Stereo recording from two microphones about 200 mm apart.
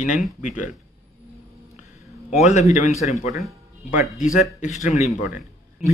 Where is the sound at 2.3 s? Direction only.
35° left (ahead or behind).